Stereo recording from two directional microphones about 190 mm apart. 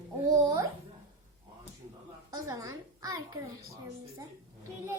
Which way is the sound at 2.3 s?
20° right (ahead or behind).